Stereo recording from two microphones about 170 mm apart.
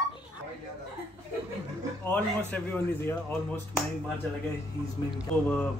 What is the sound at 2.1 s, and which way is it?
Speech, 10° left (ahead or behind).